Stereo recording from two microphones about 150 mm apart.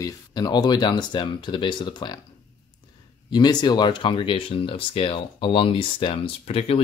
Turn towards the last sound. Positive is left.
turn(degrees=40)  # may be behind; listen again after turning